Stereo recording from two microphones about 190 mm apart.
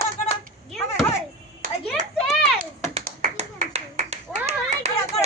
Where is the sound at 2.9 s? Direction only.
40° right (ahead or behind).